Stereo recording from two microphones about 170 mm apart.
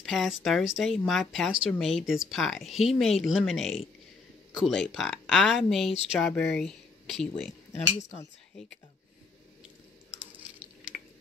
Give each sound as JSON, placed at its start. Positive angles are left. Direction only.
{"t": 0.0, "sound": "speech", "side_deg": 0}
{"t": 7.7, "sound": "speech", "side_deg": 40}